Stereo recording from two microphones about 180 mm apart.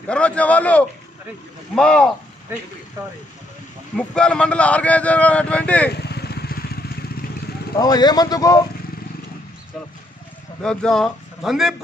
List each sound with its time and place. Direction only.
0.1 s a man's voice: 5° left (ahead or behind)
3.9 s a man's voice: 5° left (ahead or behind)
5.9 s vehicle: 65° left (ahead or behind)
7.7 s speech: 20° left (ahead or behind)
10.6 s speech: 5° left (ahead or behind)